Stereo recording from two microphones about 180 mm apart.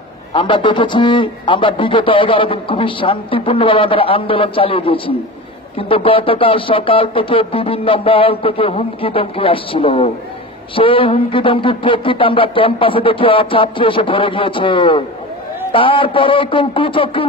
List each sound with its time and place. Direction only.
0.3 s a man's voice: 30° left (ahead or behind)